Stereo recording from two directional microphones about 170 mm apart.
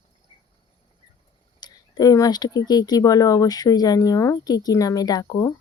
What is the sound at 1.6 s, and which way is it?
Speech, 25° left (ahead or behind).